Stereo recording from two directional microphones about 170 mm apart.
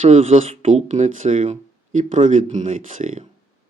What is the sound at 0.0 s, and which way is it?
Speech, 40° right (ahead or behind).